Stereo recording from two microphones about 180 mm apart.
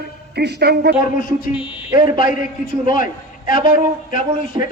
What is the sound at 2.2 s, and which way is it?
Speech, 50° left (ahead or behind).